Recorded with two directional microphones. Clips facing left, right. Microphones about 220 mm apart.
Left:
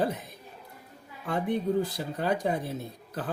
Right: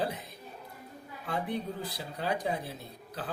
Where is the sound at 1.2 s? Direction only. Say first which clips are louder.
Left 6 dB; 50° left (ahead or behind).